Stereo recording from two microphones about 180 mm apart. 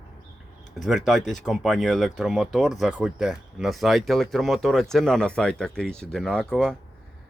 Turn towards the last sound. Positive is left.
turn(degrees=5)  # may be behind; listen again after turning